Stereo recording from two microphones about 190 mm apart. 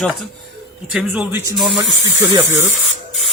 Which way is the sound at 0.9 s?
5° right (ahead or behind).